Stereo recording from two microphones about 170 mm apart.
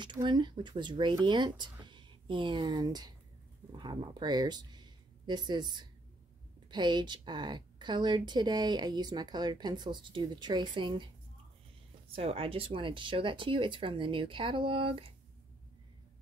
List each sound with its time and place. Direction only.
0.0 s a woman's voice: 25° right (ahead or behind)
12.2 s speech: 35° right (ahead or behind)